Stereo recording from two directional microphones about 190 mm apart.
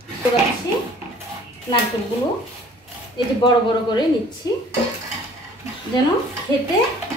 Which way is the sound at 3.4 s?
25° left (ahead or behind).